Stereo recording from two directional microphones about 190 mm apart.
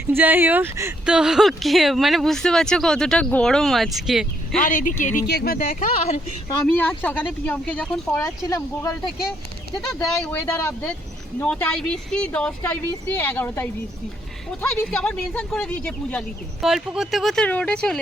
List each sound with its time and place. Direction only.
0.1 s speech: 10° right (ahead or behind)
4.6 s speech: 45° left (ahead or behind)
5.2 s speech: 55° left (ahead or behind); by 6.1 s 40° left (ahead or behind)
6.7 s speech: 10° left (ahead or behind)
8.4 s speech: 15° left (ahead or behind)
9.8 s speech: centre (ahead or behind)